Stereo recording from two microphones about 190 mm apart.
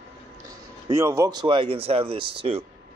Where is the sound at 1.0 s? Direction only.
15° right (ahead or behind).